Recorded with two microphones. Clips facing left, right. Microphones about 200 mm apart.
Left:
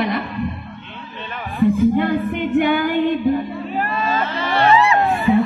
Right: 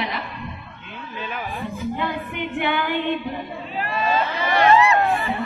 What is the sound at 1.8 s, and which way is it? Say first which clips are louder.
Music: left 10 dB; 55° left (ahead or behind).